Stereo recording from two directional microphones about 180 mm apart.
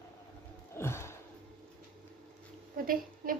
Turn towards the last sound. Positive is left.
turn(degrees=-50)  # may be behind; listen again after turning